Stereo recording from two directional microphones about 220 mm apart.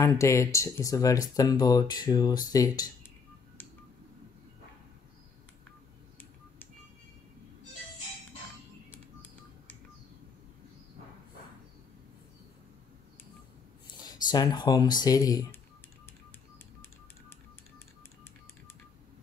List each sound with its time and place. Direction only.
0.0 s speech: 15° left (ahead or behind)
14.0 s speech: 20° left (ahead or behind)